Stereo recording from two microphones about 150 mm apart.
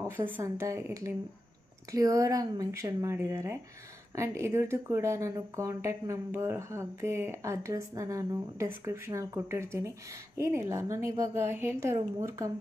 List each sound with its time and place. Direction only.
0.4 s speech: 20° right (ahead or behind)